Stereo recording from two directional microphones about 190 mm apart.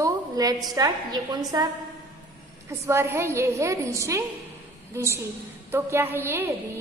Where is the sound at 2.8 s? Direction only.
15° right (ahead or behind).